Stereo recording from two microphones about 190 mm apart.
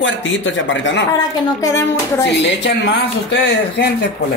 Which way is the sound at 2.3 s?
65° left (ahead or behind).